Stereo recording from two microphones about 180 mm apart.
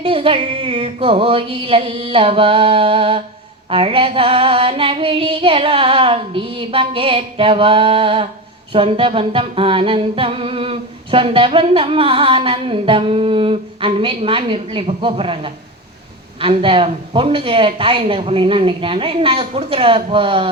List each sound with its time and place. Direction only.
0.0 s music: 30° right (ahead or behind)